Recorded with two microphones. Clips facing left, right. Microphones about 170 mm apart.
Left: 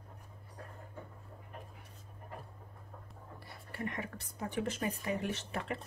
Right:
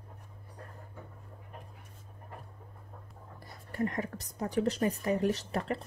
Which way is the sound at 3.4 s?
45° right (ahead or behind).